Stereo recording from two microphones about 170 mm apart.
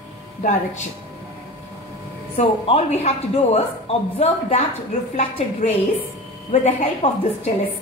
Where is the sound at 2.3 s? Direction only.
35° left (ahead or behind).